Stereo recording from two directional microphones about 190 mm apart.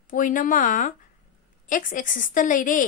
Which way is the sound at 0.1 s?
45° left (ahead or behind).